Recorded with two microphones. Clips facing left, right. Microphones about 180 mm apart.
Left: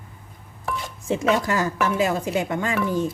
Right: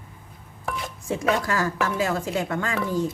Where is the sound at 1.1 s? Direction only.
20° left (ahead or behind).